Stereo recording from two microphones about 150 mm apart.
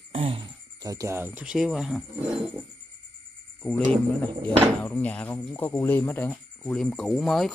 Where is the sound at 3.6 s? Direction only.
5° left (ahead or behind).